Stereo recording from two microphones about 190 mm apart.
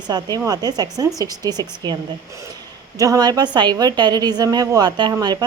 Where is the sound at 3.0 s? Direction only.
20° right (ahead or behind).